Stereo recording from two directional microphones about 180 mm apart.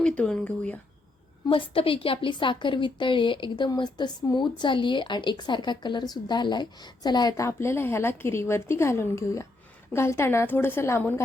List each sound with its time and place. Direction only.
0.0 s speech: 5° left (ahead or behind)
1.5 s a woman's voice: 30° left (ahead or behind); by 11.1 s 15° left (ahead or behind)